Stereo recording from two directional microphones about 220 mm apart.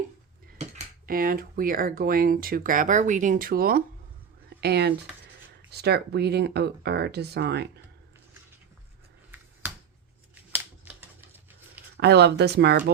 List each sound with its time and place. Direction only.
0.6 s cutlery: 30° right (ahead or behind)
1.0 s speech: 40° right (ahead or behind)
4.4 s a sound: 50° right (ahead or behind)
5.7 s speech: 50° right (ahead or behind)
10.5 s scissors: 10° right (ahead or behind)
11.9 s speech: 50° right (ahead or behind)